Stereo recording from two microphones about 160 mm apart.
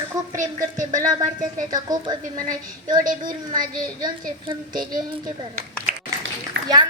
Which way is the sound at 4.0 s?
30° right (ahead or behind).